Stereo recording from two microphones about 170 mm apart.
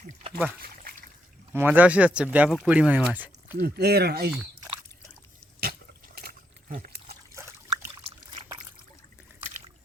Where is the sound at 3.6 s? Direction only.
70° right (ahead or behind).